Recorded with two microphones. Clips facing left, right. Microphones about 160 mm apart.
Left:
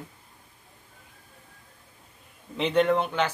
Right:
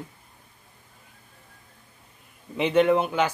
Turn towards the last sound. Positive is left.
turn(degrees=-10)  # may be behind; listen again after turning